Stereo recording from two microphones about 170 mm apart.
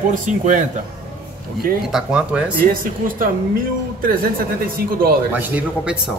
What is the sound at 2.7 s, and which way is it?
Speech, 55° right (ahead or behind).